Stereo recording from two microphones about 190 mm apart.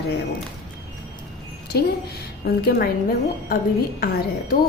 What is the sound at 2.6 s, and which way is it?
Speech, 55° left (ahead or behind).